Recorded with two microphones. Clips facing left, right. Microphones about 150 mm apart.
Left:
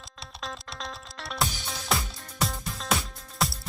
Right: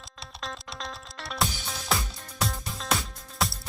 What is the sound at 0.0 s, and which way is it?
Music, centre (ahead or behind).